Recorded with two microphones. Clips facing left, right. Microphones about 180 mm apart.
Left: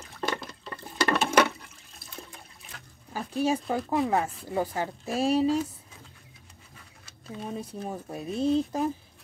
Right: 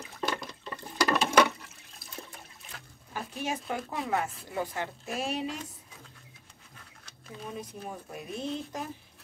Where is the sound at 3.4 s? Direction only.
35° left (ahead or behind).